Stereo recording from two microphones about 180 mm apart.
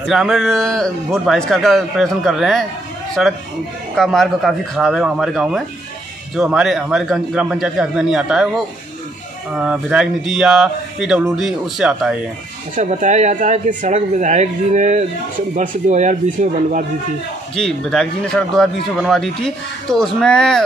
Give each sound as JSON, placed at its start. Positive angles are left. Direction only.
{"t": 0.0, "sound": "speech", "side_deg": 0}
{"t": 9.6, "sound": "speech", "side_deg": -5}
{"t": 12.7, "sound": "speech", "side_deg": -45}
{"t": 17.6, "sound": "speech", "side_deg": 0}